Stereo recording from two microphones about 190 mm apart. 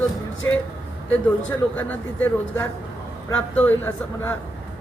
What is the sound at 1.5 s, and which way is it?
Speech, 10° left (ahead or behind).